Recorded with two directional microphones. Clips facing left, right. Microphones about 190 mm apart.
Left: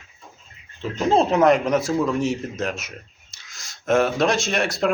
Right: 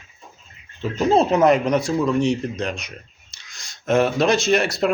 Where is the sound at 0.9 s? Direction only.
Centre (ahead or behind).